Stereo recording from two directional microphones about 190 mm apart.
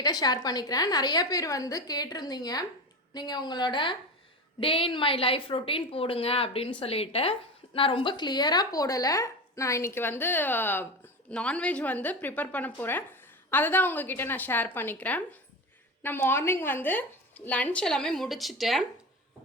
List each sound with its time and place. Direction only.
0.0 s a woman's voice: 20° left (ahead or behind); by 18.9 s centre (ahead or behind)